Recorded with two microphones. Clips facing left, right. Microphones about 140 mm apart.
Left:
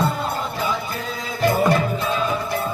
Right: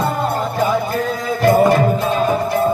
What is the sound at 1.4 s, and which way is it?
Music, 50° right (ahead or behind).